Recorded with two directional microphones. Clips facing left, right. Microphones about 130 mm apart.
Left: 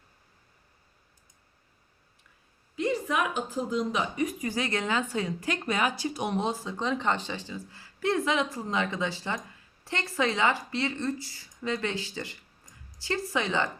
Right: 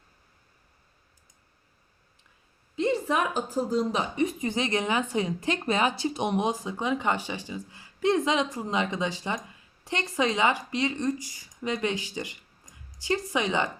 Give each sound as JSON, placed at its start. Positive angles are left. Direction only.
{"t": 2.7, "sound": "a woman's voice", "side_deg": -30}